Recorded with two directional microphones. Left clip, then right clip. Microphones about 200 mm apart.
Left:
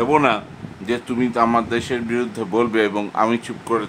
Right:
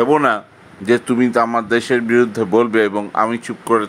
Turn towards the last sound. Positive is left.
turn(degrees=-20)  # may be behind; listen again after turning